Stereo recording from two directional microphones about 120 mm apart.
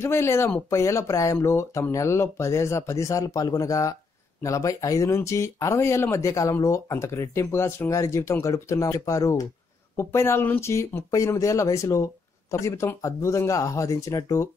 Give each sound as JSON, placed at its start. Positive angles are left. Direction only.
{"t": 0.0, "sound": "speech", "side_deg": 20}